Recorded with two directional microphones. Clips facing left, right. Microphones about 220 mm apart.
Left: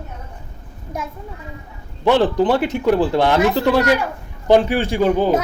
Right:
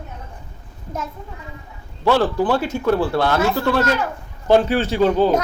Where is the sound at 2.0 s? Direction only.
20° left (ahead or behind).